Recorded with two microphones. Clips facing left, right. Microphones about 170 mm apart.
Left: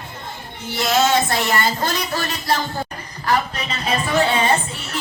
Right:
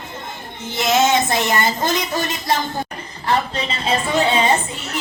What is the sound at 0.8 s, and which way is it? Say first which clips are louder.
Speech: right 1 dB; 20° right (ahead or behind).